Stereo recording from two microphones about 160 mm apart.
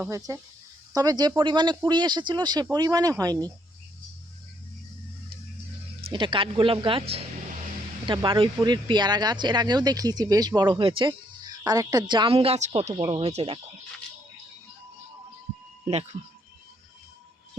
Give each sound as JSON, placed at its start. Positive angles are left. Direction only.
{"t": 0.1, "sound": "speech", "side_deg": -20}
{"t": 6.1, "sound": "speech", "side_deg": -30}
{"t": 11.6, "sound": "speech", "side_deg": -20}